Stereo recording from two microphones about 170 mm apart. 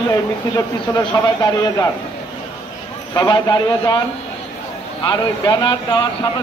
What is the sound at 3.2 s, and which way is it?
Speech, 25° left (ahead or behind).